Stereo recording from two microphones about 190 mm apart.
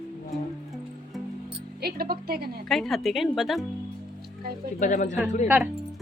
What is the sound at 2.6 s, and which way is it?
Speech, centre (ahead or behind).